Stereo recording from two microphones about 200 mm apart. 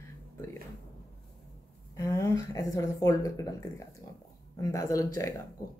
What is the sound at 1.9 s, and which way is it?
Speech, 15° left (ahead or behind).